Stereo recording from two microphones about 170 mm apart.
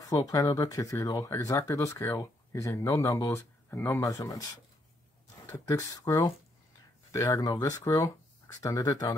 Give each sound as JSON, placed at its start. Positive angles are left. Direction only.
{"t": 0.1, "sound": "speech", "side_deg": 20}
{"t": 5.5, "sound": "speech", "side_deg": 20}